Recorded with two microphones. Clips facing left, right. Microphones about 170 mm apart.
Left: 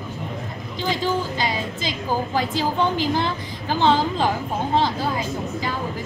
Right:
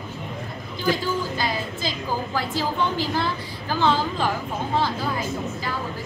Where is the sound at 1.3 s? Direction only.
20° left (ahead or behind).